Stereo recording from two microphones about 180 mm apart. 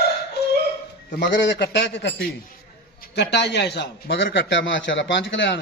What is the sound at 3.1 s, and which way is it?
A man's voice, 70° left (ahead or behind).